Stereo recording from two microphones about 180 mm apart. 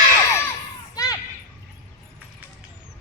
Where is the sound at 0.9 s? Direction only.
20° left (ahead or behind).